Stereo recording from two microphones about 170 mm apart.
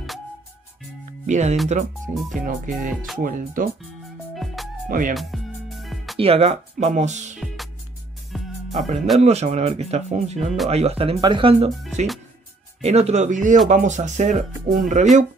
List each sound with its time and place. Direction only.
1.2 s speech: 45° right (ahead or behind)
4.4 s music: centre (ahead or behind)
4.8 s speech: 55° right (ahead or behind)
5.1 s music: centre (ahead or behind)
6.1 s speech: 35° right (ahead or behind)
7.3 s music: centre (ahead or behind)
8.7 s speech: 40° right (ahead or behind)
12.8 s speech: 40° right (ahead or behind)